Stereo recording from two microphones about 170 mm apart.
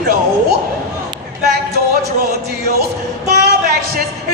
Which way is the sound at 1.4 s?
70° right (ahead or behind).